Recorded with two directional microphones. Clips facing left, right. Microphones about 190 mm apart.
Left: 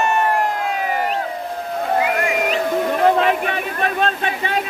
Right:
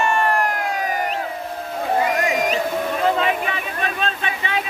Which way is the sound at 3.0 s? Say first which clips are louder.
Left 4 dB; 55° left (ahead or behind).